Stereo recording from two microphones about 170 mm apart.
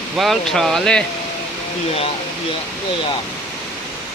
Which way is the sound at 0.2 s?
Centre (ahead or behind).